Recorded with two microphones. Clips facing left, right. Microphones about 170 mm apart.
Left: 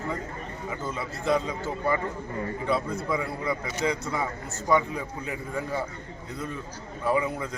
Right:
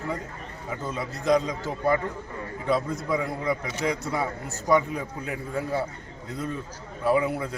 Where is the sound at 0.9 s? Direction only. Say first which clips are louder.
Right 3 dB; 15° right (ahead or behind).